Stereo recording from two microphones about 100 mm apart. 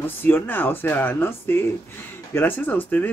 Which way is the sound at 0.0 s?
20° left (ahead or behind).